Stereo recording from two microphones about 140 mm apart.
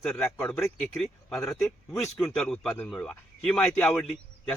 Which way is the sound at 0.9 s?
5° left (ahead or behind).